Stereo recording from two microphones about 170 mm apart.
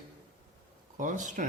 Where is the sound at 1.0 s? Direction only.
50° right (ahead or behind).